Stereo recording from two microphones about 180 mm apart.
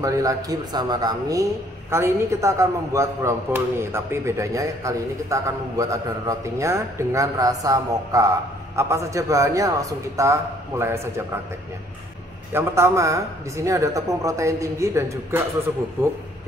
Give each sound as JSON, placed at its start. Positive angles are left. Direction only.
{"t": 0.0, "sound": "a man's voice", "side_deg": -20}
{"t": 12.5, "sound": "a man's voice", "side_deg": -15}